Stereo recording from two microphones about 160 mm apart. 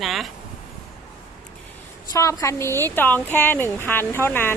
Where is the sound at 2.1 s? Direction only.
20° left (ahead or behind).